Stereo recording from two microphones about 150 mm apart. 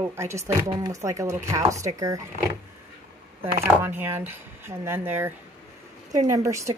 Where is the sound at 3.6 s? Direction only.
15° right (ahead or behind).